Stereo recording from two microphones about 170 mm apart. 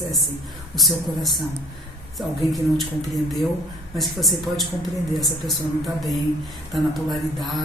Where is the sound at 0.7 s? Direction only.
Centre (ahead or behind).